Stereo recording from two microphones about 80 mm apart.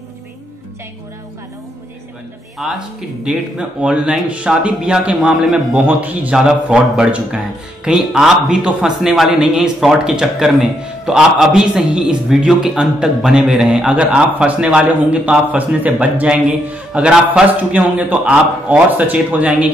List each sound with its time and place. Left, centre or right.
2.6 s speech: centre
5.9 s a man's voice: centre
6.3 s a man's voice: centre